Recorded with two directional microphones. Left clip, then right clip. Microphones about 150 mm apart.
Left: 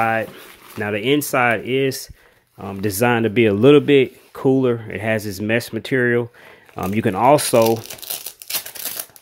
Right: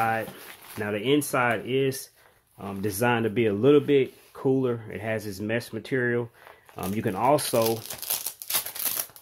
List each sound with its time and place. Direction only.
0.0 s speech: 55° left (ahead or behind)
7.9 s crumpling: centre (ahead or behind)